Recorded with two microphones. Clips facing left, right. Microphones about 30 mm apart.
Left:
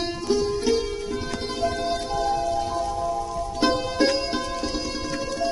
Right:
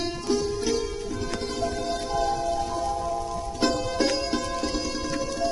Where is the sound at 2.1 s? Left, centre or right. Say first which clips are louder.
Left 1 dB; centre.